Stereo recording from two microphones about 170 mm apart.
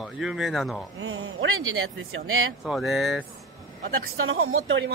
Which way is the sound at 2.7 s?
Centre (ahead or behind).